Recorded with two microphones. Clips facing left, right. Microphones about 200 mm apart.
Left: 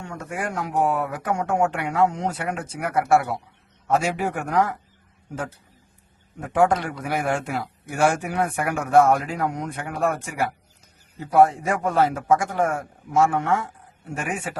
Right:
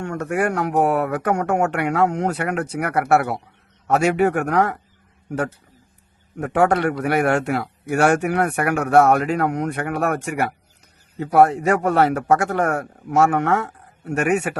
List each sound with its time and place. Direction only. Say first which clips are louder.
0.0 s a man's voice: right 8 dB; 65° right (ahead or behind)
6.4 s speech: right 3 dB; 65° right (ahead or behind)